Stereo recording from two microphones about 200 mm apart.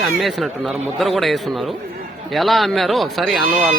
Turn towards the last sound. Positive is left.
turn(degrees=0)  # may be behind; listen again after turning